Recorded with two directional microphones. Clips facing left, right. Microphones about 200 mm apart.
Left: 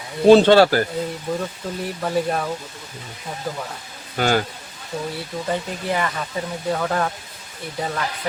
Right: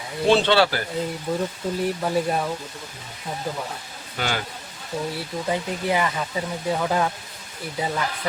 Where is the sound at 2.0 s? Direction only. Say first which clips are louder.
Left 1 dB; 5° right (ahead or behind).